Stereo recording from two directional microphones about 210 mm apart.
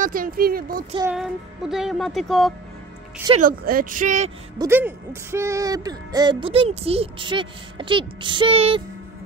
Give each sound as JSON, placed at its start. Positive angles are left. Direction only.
{"t": 0.0, "sound": "speech", "side_deg": -40}
{"t": 1.0, "sound": "speech", "side_deg": -5}
{"t": 3.3, "sound": "speech", "side_deg": -40}
{"t": 4.6, "sound": "speech", "side_deg": -10}